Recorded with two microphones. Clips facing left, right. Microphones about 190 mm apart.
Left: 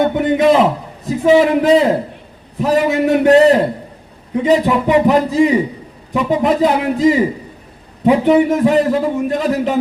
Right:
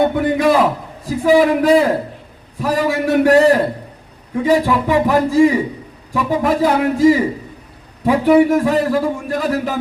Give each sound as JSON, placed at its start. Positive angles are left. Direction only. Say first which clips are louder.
{"t": 0.1, "sound": "a man's voice", "louder": "left 2 dB", "side_deg": 20}